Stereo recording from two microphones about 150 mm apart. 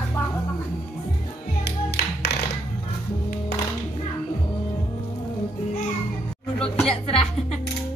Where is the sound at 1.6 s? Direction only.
90° left.